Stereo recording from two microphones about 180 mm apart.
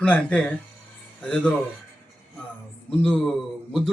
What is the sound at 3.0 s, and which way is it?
Speech, 5° left (ahead or behind).